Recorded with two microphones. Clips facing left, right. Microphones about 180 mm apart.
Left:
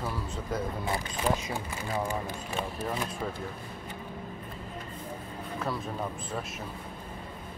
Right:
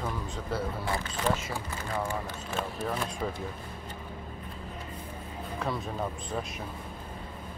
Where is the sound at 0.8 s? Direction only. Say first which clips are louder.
Even; 15° left (ahead or behind).